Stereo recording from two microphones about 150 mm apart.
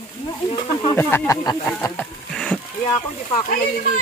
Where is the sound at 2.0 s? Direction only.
5° left (ahead or behind).